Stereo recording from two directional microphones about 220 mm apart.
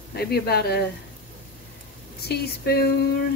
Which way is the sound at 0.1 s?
45° left (ahead or behind).